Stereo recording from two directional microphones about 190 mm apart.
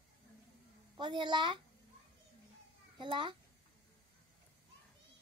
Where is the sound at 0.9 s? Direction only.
25° right (ahead or behind).